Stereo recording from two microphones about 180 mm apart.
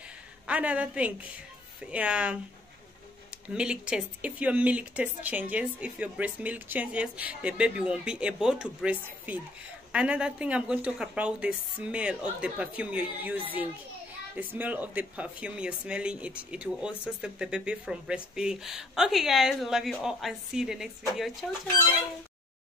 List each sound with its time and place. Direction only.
0.5 s speech: 5° right (ahead or behind)